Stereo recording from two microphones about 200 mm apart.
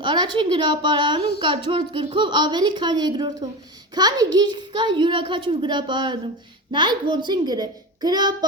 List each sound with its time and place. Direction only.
0.0 s a woman's voice: 25° right (ahead or behind)